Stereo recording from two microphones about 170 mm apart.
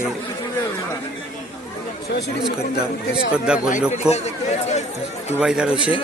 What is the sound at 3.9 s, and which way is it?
Speech, 40° left (ahead or behind).